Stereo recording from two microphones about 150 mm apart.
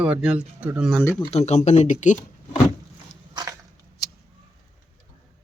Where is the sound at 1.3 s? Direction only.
50° left (ahead or behind).